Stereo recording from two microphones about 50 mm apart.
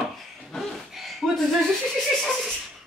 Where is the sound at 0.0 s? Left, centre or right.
Centre.